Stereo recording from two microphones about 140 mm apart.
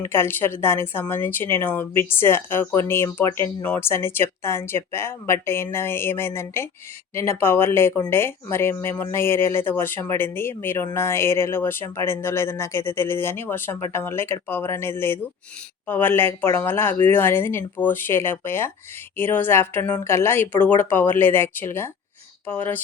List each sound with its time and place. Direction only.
0.0 s speech: 15° left (ahead or behind)